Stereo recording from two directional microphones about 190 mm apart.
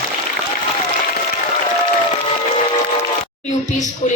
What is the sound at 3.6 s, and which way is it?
Speech, 40° left (ahead or behind).